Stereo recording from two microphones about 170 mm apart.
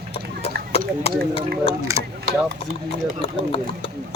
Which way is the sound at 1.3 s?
35° left (ahead or behind).